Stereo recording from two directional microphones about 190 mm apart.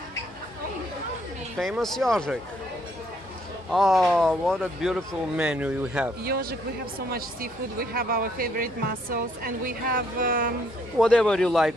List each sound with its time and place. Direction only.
1.6 s speech: centre (ahead or behind)
3.7 s speech: centre (ahead or behind)
7.8 s speech: 50° right (ahead or behind)
11.0 s speech: 5° left (ahead or behind)